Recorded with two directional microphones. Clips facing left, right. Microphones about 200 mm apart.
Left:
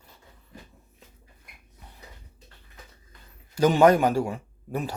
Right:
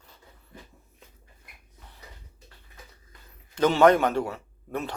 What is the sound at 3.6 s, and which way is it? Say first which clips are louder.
A man's voice: left 1 dB; 10° left (ahead or behind).